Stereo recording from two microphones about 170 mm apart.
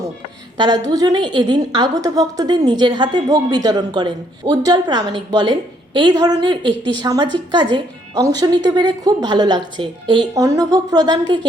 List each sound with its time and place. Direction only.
0.5 s a woman's voice: 25° right (ahead or behind)